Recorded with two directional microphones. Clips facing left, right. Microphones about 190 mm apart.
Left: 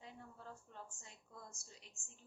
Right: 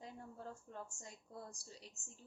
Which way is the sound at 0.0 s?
45° right (ahead or behind).